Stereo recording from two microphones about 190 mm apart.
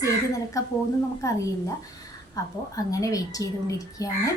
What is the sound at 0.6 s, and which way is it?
Speech, 15° left (ahead or behind).